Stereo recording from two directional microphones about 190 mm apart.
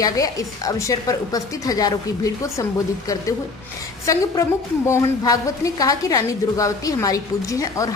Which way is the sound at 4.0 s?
15° left (ahead or behind).